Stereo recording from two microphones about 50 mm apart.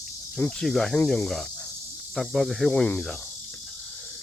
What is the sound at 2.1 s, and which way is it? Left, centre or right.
Speech, centre.